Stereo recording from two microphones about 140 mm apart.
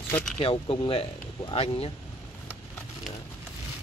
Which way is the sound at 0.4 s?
40° left (ahead or behind).